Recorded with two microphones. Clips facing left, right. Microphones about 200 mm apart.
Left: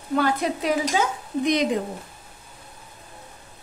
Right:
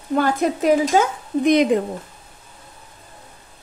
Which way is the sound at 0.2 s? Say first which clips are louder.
Right 5 dB; 45° right (ahead or behind).